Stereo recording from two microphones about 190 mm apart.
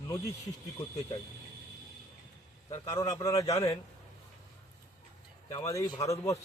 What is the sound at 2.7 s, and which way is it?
Speech, 15° left (ahead or behind).